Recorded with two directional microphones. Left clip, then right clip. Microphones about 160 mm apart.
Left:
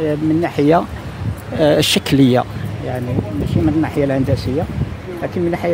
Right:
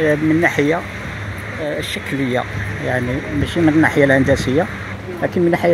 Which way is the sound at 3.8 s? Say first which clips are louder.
Right 5 dB; 10° left (ahead or behind).